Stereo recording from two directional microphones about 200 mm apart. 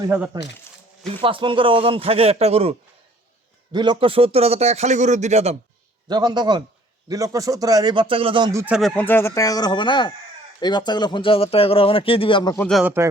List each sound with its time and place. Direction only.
1.0 s a man's voice: 25° right (ahead or behind)
6.1 s a man's voice: 20° right (ahead or behind)
8.6 s speech: 5° right (ahead or behind)
9.0 s speech: 10° left (ahead or behind)
12.6 s speech: centre (ahead or behind)